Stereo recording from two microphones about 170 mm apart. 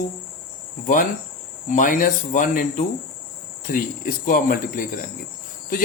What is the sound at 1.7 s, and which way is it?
A man's voice, 50° left (ahead or behind).